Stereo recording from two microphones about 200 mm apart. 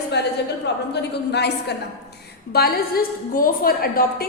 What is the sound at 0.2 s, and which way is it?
A woman's voice, 55° left (ahead or behind).